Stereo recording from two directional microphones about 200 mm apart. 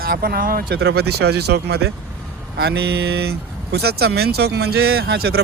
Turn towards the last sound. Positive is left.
turn(degrees=-50)  # may be behind; listen again after turning